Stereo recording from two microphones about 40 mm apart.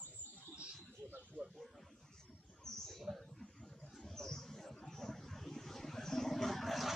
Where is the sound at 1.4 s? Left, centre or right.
Right.